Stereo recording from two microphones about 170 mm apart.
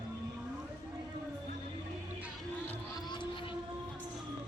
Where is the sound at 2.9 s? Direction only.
25° left (ahead or behind).